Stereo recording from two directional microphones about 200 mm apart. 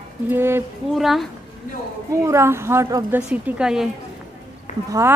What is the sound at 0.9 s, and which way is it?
Speech, centre (ahead or behind).